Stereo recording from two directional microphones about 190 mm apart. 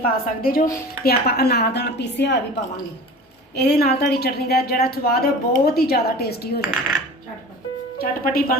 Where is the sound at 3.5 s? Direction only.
55° left (ahead or behind).